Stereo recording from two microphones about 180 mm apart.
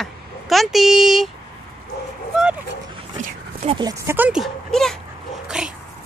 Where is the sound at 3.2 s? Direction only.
35° right (ahead or behind).